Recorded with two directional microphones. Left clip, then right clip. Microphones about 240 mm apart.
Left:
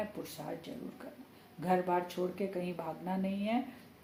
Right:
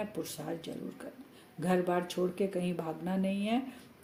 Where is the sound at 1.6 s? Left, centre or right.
Right.